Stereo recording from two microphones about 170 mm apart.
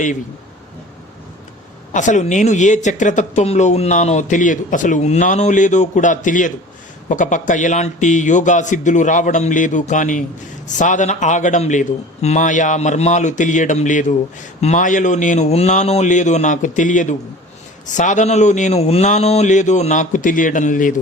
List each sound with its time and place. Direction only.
1.9 s speech: 45° left (ahead or behind)